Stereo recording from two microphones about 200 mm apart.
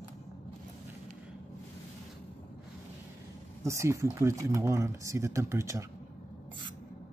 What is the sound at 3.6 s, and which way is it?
Speech, 15° right (ahead or behind).